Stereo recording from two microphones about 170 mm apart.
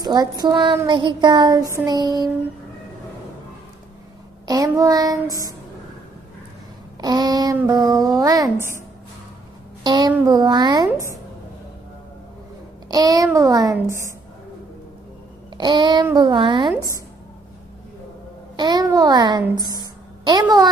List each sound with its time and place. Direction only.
0.0 s speech: 25° right (ahead or behind)
4.5 s speech: 20° right (ahead or behind)
7.0 s speech: 25° right (ahead or behind)
9.8 s speech: 25° right (ahead or behind)
12.8 s speech: 20° right (ahead or behind)
15.5 s speech: 25° right (ahead or behind)
18.6 s a woman's voice: 20° right (ahead or behind)